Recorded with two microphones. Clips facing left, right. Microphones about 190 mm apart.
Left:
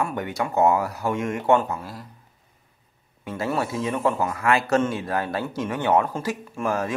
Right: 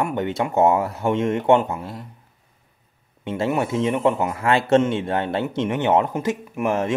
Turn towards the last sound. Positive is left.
turn(degrees=-20)  # may be behind; listen again after turning